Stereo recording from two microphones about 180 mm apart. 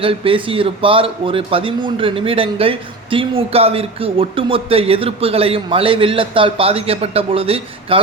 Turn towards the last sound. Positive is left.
turn(degrees=-30)  # may be behind; listen again after turning